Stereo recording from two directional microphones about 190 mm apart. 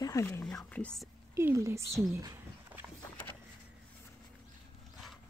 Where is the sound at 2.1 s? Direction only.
15° right (ahead or behind).